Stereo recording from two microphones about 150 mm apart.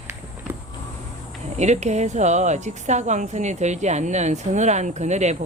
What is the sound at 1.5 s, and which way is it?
A woman's voice, 50° right (ahead or behind).